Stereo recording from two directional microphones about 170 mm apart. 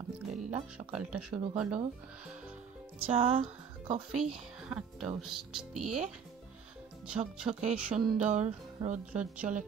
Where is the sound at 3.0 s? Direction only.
35° right (ahead or behind).